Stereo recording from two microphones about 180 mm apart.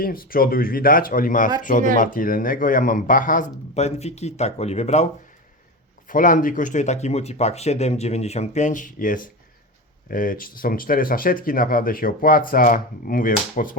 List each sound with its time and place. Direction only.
0.0 s speech: 55° left (ahead or behind); by 5.0 s 35° left (ahead or behind)
6.1 s speech: 50° left (ahead or behind)